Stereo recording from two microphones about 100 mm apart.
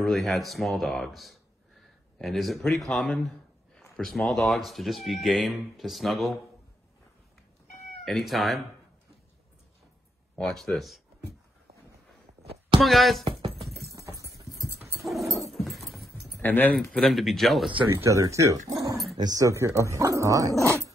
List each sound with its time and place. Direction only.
0.0 s speech: centre (ahead or behind)
8.0 s speech: centre (ahead or behind)
10.3 s speech: 5° left (ahead or behind)
12.8 s speech: centre (ahead or behind)
13.2 s a sound: 60° right (ahead or behind)
13.9 s a sound: 35° right (ahead or behind)
14.7 s dog: 25° right (ahead or behind)
15.6 s dog: centre (ahead or behind)
16.3 s speech: 20° left (ahead or behind)
16.9 s speech: centre (ahead or behind)
17.8 s speech: 30° right (ahead or behind)
20.6 s dog: 30° right (ahead or behind)